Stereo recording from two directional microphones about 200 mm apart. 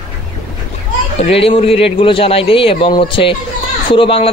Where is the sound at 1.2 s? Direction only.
30° left (ahead or behind).